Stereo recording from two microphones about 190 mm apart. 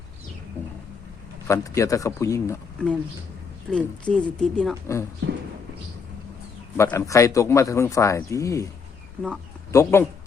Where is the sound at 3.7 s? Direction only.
Centre (ahead or behind).